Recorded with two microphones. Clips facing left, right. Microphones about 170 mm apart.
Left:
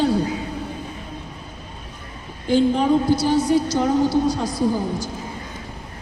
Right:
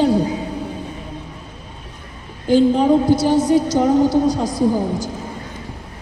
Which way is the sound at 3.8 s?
15° right (ahead or behind).